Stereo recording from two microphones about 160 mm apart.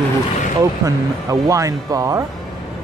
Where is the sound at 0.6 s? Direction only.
20° right (ahead or behind).